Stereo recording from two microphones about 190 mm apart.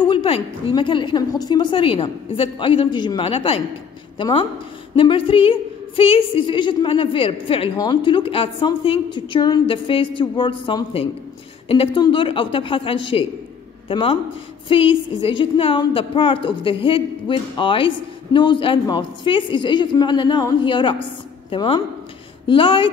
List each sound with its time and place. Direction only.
0.1 s a woman's voice: 25° left (ahead or behind)